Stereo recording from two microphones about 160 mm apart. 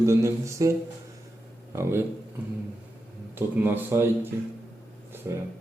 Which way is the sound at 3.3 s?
15° right (ahead or behind).